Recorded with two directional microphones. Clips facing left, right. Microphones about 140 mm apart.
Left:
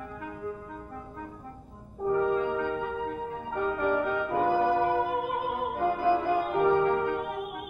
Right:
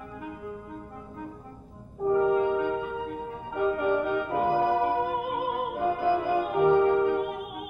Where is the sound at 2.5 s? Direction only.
15° right (ahead or behind).